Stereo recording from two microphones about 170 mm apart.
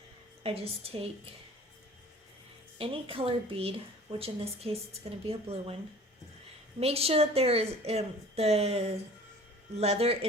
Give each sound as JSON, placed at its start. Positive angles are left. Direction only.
{"t": 0.4, "sound": "a woman's voice", "side_deg": -35}
{"t": 2.7, "sound": "a woman's voice", "side_deg": -30}
{"t": 6.7, "sound": "a woman's voice", "side_deg": -35}